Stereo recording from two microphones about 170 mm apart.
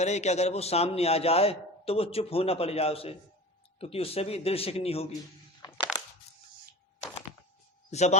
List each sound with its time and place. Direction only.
0.0 s a man's voice: 40° left (ahead or behind)
6.3 s a sound: 40° left (ahead or behind)
7.9 s speech: 40° left (ahead or behind)